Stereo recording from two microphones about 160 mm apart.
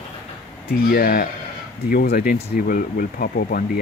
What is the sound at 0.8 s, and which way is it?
Speech, 70° left (ahead or behind).